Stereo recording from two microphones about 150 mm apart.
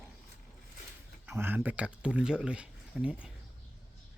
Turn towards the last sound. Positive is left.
turn(degrees=-5)  # may be behind; listen again after turning